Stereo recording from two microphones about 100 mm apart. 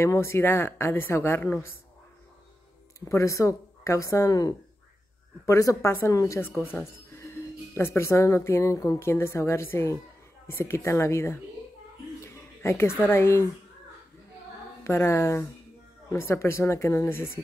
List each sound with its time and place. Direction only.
0.0 s speech: 25° left (ahead or behind)
3.1 s a woman's voice: 30° left (ahead or behind)
12.2 s a sound: 30° left (ahead or behind)
13.0 s speech: 25° left (ahead or behind)
14.8 s speech: 25° left (ahead or behind)